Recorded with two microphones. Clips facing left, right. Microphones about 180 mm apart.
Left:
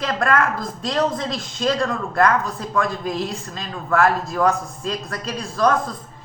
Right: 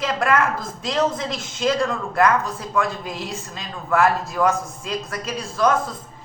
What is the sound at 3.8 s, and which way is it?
A man's voice, 20° right (ahead or behind).